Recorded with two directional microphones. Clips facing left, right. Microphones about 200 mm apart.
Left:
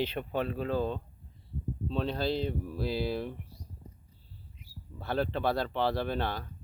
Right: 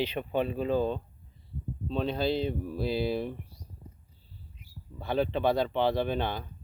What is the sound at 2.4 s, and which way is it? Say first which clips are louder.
Speech: right 2 dB; 25° right (ahead or behind).